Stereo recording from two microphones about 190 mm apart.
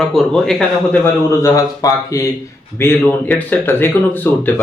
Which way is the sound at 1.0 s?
15° left (ahead or behind).